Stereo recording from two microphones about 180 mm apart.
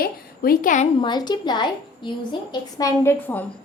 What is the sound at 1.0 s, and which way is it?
A woman's voice, 25° left (ahead or behind).